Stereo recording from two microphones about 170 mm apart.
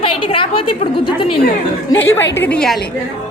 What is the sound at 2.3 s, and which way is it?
Speech, 10° left (ahead or behind).